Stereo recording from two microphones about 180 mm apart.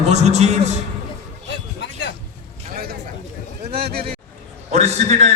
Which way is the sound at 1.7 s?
70° left (ahead or behind).